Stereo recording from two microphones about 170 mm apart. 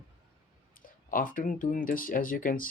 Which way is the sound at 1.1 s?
55° left (ahead or behind).